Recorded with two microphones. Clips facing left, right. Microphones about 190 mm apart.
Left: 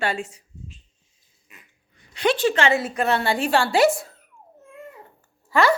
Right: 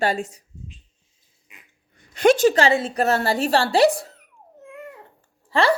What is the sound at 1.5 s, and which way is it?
Dog, 15° right (ahead or behind).